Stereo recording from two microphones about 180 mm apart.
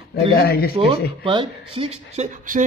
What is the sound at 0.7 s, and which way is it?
A man's voice, 30° right (ahead or behind).